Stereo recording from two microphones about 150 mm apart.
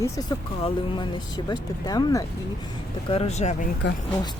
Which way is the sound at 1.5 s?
25° left (ahead or behind).